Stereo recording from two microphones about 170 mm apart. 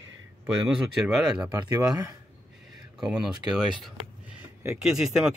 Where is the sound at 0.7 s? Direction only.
5° right (ahead or behind).